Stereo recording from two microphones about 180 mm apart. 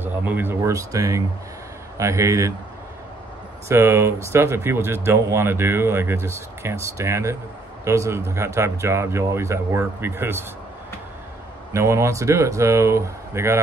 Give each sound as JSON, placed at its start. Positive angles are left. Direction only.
{"t": 0.0, "sound": "speech", "side_deg": -10}
{"t": 3.6, "sound": "speech", "side_deg": -15}
{"t": 11.7, "sound": "speech", "side_deg": -15}